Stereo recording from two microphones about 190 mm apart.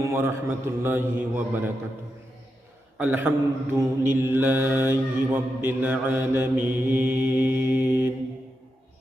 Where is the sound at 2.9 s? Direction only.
10° right (ahead or behind).